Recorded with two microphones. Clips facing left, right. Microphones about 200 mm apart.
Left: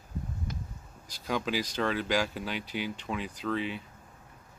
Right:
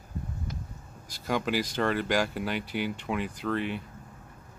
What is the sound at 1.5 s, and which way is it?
Speech, 55° right (ahead or behind).